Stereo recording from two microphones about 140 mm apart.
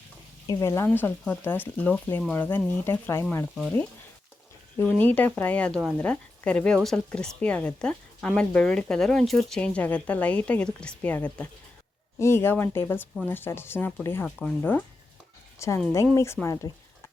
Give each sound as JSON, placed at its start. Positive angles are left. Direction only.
{"t": 0.4, "sound": "speech", "side_deg": 25}
{"t": 4.8, "sound": "speech", "side_deg": 10}
{"t": 14.3, "sound": "speech", "side_deg": 0}